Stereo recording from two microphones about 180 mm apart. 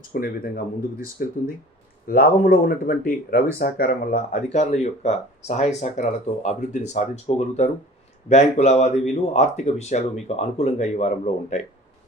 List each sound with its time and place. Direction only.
0.1 s speech: 55° left (ahead or behind)
2.0 s speech: 55° left (ahead or behind)
4.5 s speech: 40° left (ahead or behind)